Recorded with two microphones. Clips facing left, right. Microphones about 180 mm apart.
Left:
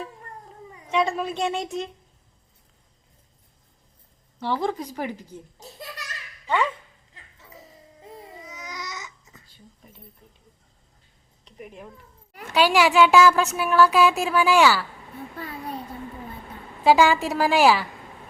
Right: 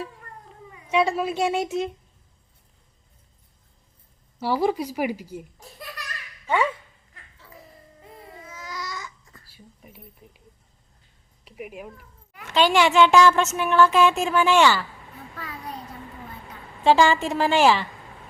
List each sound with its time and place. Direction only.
0.9 s speech: 5° right (ahead or behind)
4.4 s speech: 10° right (ahead or behind)
5.5 s a sound: 20° left (ahead or behind)
7.1 s music: 20° left (ahead or behind)
8.0 s babbling: 20° left (ahead or behind)
9.5 s speech: 10° right (ahead or behind)
11.4 s speech: 10° right (ahead or behind)
12.5 s a woman's voice: 10° left (ahead or behind)
15.4 s a child's voice: 30° left (ahead or behind)
16.8 s a woman's voice: 10° left (ahead or behind)